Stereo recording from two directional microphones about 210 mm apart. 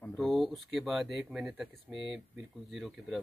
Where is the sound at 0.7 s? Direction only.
Centre (ahead or behind).